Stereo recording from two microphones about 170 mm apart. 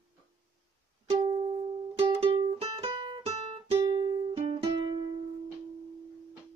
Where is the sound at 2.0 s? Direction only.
35° right (ahead or behind).